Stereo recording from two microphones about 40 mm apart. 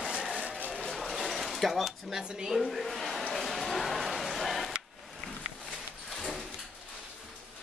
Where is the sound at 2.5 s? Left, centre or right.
Centre.